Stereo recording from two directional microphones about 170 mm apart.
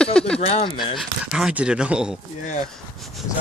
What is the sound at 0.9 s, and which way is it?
Speech, 5° right (ahead or behind).